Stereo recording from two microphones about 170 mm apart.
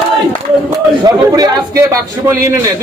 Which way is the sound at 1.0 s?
20° right (ahead or behind).